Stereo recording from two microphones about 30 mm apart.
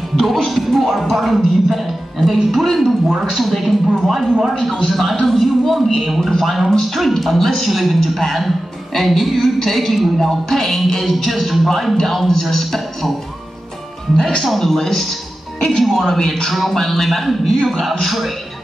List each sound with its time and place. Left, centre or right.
0.1 s a man's voice: centre
6.7 s a man's voice: centre
14.1 s speech: centre
14.4 s a man's voice: centre
17.6 s a man's voice: centre